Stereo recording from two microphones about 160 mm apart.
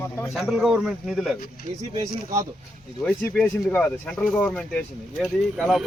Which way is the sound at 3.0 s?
10° left (ahead or behind).